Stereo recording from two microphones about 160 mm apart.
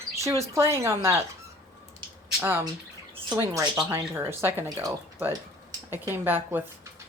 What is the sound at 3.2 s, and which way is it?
Speech, 25° right (ahead or behind).